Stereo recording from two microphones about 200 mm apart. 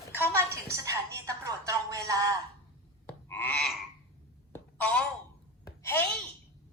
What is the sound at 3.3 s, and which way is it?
Frog, 10° left (ahead or behind).